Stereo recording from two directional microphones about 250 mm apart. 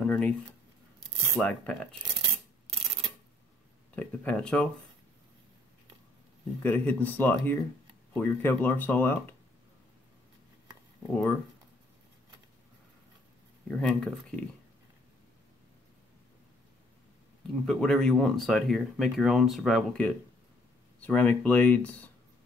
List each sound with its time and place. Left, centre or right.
0.0 s a sound: centre
1.3 s speech: centre
2.1 s rub: right
3.9 s speech: centre
6.6 s speech: centre
11.0 s speech: centre
13.7 s speech: centre
17.6 s speech: centre